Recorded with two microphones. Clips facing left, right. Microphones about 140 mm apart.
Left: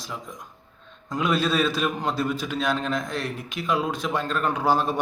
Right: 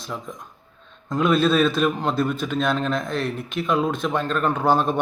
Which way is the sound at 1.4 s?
55° right (ahead or behind).